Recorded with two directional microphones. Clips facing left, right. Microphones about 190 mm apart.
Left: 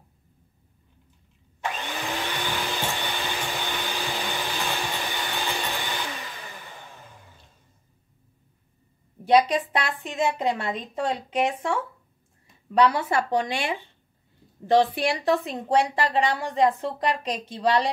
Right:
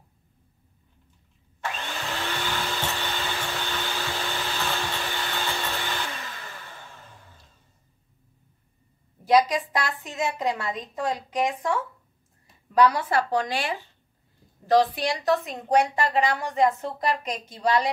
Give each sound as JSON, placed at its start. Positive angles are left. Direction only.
{"t": 1.6, "sound": "vacuum cleaner", "side_deg": 15}
{"t": 3.5, "sound": "hair dryer", "side_deg": 15}
{"t": 9.2, "sound": "a woman's voice", "side_deg": 25}
{"t": 12.7, "sound": "a woman's voice", "side_deg": 25}